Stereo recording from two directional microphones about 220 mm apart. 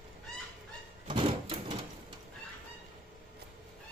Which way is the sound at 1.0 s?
25° right (ahead or behind).